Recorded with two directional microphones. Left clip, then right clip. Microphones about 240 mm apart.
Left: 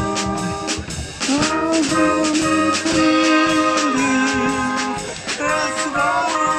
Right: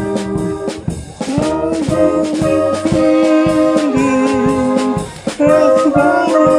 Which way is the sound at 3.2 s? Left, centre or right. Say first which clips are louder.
Right 4 dB; right.